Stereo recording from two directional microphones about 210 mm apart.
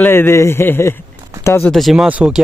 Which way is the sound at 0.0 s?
10° left (ahead or behind).